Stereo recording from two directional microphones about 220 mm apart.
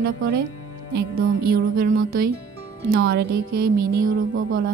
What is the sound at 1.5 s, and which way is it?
A woman's voice, 45° right (ahead or behind).